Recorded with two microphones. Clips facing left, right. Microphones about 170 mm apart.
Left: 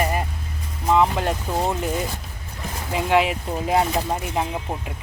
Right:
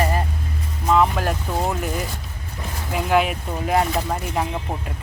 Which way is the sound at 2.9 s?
25° left (ahead or behind).